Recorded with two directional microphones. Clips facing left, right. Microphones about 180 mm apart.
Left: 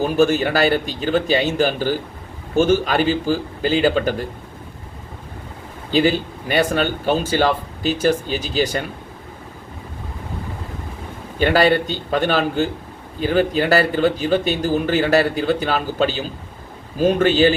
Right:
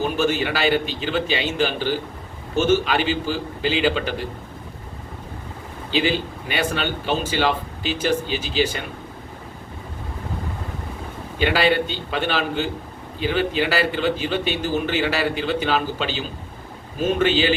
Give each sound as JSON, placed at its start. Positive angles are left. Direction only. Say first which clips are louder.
{"t": 0.2, "sound": "speech", "louder": "left 8 dB", "side_deg": 45}
{"t": 5.9, "sound": "speech", "louder": "left 4 dB", "side_deg": 45}
{"t": 11.3, "sound": "speech", "louder": "left 4 dB", "side_deg": 45}